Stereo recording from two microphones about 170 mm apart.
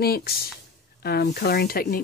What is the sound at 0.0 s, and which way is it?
Speech, 65° left (ahead or behind).